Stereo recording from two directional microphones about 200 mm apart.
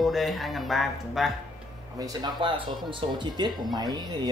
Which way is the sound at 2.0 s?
20° right (ahead or behind).